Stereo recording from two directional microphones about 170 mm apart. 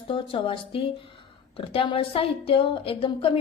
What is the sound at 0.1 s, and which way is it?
A woman's voice, 30° left (ahead or behind).